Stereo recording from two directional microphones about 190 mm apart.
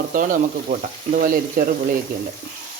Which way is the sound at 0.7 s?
50° right (ahead or behind).